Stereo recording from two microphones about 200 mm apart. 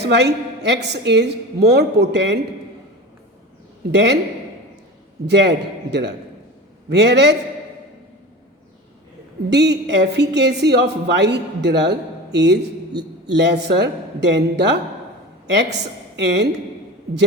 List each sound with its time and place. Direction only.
0.0 s speech: 60° right (ahead or behind)
3.9 s speech: 60° right (ahead or behind)
5.2 s speech: 60° right (ahead or behind)
9.5 s a woman's voice: 60° right (ahead or behind)